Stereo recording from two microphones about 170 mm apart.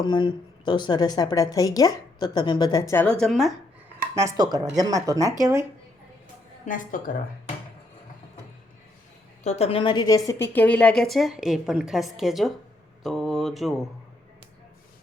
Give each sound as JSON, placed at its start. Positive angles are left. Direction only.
{"t": 0.0, "sound": "a woman's voice", "side_deg": 25}
{"t": 2.9, "sound": "a woman's voice", "side_deg": 10}
{"t": 4.1, "sound": "speech", "side_deg": -20}
{"t": 6.7, "sound": "speech", "side_deg": 55}
{"t": 9.4, "sound": "a woman's voice", "side_deg": 40}
{"t": 13.0, "sound": "a sound", "side_deg": 0}